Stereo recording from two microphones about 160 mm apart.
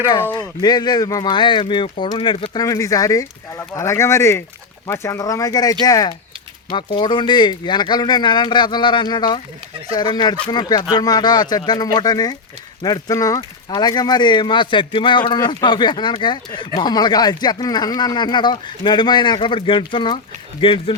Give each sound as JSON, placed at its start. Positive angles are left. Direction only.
{"t": 0.6, "sound": "speech", "side_deg": 25}